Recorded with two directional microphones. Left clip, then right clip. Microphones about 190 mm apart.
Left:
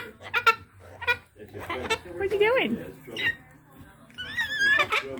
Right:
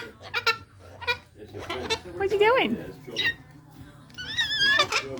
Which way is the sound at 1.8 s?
Centre (ahead or behind).